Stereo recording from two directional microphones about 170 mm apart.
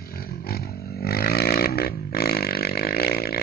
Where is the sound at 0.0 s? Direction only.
65° left (ahead or behind).